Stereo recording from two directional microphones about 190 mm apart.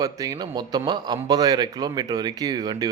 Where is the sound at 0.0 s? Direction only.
20° right (ahead or behind).